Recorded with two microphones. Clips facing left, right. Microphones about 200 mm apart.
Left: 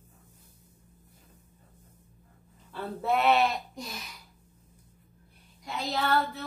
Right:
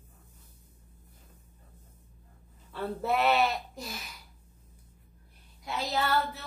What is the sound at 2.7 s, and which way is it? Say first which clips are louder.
Speech: left 1 dB; centre (ahead or behind).